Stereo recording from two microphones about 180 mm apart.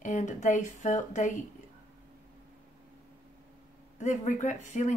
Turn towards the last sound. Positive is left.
turn(degrees=45)  # may be behind; listen again after turning